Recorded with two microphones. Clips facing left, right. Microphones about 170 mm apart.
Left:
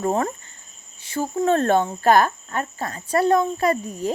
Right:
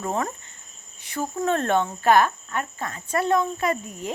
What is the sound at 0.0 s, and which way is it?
Speech, 35° left (ahead or behind).